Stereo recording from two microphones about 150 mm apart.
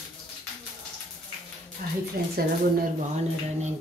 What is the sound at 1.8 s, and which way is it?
Speech, 70° right (ahead or behind).